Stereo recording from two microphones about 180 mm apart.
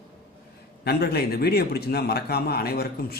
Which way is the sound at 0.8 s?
60° left (ahead or behind).